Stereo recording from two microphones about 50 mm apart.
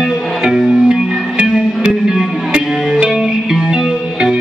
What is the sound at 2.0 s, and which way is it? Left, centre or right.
Music, centre.